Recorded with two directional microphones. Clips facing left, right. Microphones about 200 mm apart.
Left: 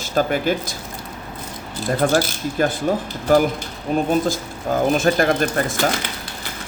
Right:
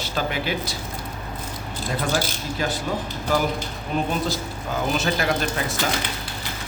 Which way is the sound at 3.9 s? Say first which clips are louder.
Left 6 dB; 45° left (ahead or behind).